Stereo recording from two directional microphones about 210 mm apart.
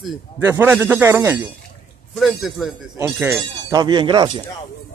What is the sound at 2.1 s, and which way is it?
A man's voice, centre (ahead or behind).